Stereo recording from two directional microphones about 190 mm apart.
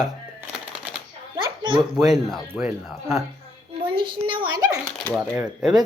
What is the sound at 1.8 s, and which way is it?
Speech, centre (ahead or behind).